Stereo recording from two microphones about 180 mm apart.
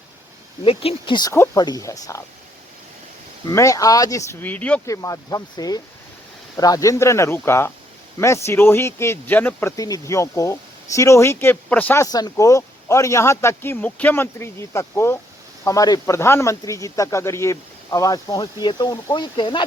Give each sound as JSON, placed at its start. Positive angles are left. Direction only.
{"t": 0.6, "sound": "speech", "side_deg": 30}
{"t": 3.4, "sound": "speech", "side_deg": 15}
{"t": 12.0, "sound": "speech", "side_deg": 20}